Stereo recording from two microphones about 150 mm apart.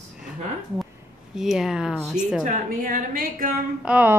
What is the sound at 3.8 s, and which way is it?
Speech, 10° right (ahead or behind).